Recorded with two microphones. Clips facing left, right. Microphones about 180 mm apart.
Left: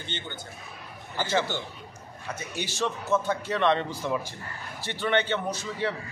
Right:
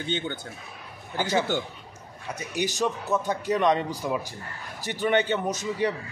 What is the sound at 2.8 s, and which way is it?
Speech, 15° right (ahead or behind).